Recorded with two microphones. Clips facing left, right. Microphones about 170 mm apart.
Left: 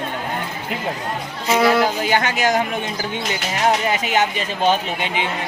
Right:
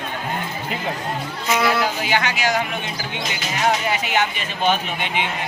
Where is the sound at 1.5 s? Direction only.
35° left (ahead or behind).